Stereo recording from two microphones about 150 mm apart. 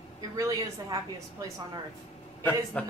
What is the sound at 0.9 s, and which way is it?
Speech, 20° right (ahead or behind).